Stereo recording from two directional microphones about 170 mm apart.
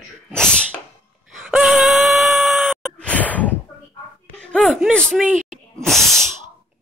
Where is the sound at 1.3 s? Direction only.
Centre (ahead or behind).